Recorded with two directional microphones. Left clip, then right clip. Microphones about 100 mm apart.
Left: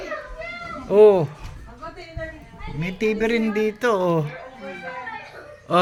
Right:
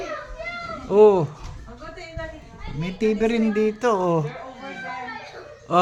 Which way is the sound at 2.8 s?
20° right (ahead or behind).